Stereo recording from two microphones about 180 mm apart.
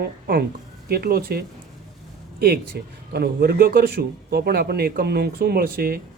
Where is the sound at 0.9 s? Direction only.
55° right (ahead or behind).